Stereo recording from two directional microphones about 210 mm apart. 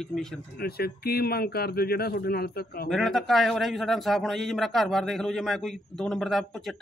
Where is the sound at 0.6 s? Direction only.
45° left (ahead or behind).